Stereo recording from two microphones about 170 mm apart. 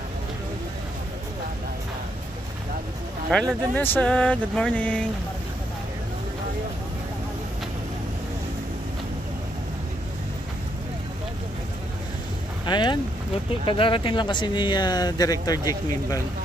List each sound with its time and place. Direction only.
3.3 s speech: 5° left (ahead or behind)
12.6 s speech: 25° left (ahead or behind)